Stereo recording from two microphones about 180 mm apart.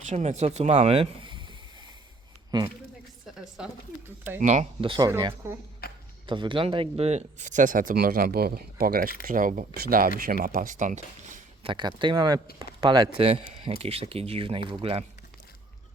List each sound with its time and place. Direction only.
0.1 s speech: 40° right (ahead or behind)
2.5 s speech: 25° right (ahead or behind)
3.2 s a woman's voice: 5° right (ahead or behind)
4.4 s speech: 40° right (ahead or behind)
4.8 s speech: 25° right (ahead or behind)
5.8 s a sound: 60° left (ahead or behind)
6.2 s speech: 25° right (ahead or behind); by 11.4 s 45° right (ahead or behind)
11.6 s speech: 25° right (ahead or behind)